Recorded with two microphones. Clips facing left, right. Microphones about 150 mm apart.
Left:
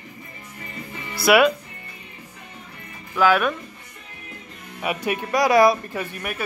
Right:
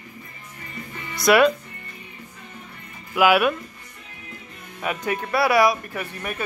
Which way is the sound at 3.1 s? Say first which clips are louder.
Right 1 dB; 10° right (ahead or behind).